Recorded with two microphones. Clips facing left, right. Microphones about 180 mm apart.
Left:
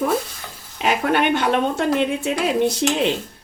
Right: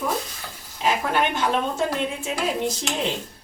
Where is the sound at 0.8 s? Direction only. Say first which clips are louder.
Left 3 dB; 70° left (ahead or behind).